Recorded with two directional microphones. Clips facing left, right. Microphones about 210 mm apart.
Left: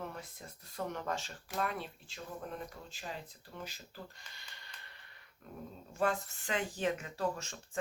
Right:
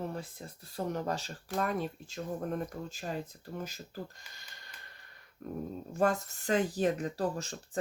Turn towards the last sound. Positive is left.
turn(degrees=-35)  # may be behind; listen again after turning